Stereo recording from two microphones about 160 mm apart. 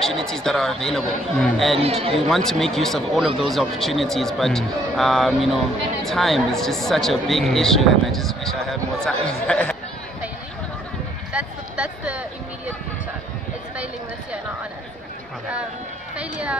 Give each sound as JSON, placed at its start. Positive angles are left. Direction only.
{"t": 0.0, "sound": "speech", "side_deg": 5}
{"t": 1.8, "sound": "speech", "side_deg": -40}
{"t": 2.2, "sound": "speech", "side_deg": 0}
{"t": 11.3, "sound": "a sound", "side_deg": -5}
{"t": 16.2, "sound": "a woman's voice", "side_deg": -10}